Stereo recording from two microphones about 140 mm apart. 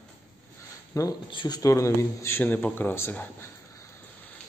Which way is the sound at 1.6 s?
20° left (ahead or behind).